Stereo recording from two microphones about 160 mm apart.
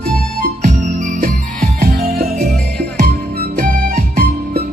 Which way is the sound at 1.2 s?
60° right (ahead or behind).